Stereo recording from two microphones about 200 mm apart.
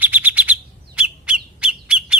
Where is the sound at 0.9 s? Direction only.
5° right (ahead or behind).